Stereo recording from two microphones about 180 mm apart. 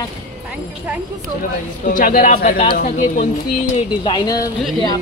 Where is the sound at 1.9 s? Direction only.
55° left (ahead or behind).